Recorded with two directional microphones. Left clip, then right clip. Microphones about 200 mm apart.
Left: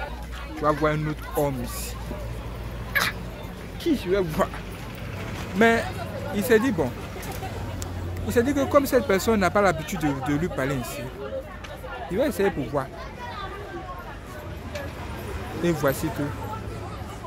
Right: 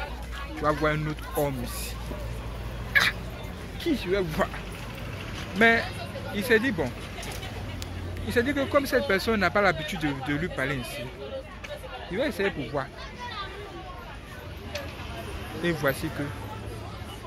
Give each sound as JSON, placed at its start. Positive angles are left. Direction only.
{"t": 0.6, "sound": "speech", "side_deg": 15}
{"t": 2.9, "sound": "fowl", "side_deg": 10}
{"t": 3.8, "sound": "speech", "side_deg": 15}
{"t": 5.6, "sound": "speech", "side_deg": 10}
{"t": 8.3, "sound": "speech", "side_deg": 10}
{"t": 12.1, "sound": "speech", "side_deg": 10}
{"t": 15.6, "sound": "speech", "side_deg": 10}